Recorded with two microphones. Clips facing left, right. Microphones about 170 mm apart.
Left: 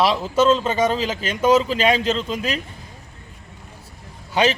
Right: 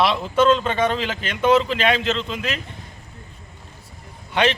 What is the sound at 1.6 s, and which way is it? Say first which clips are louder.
Speech: left 2 dB; 40° left (ahead or behind).